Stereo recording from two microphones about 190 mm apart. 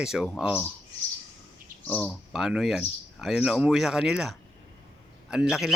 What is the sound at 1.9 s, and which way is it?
Speech, 5° left (ahead or behind).